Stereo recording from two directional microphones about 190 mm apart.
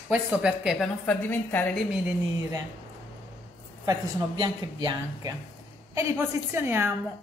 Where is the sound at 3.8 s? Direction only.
20° right (ahead or behind).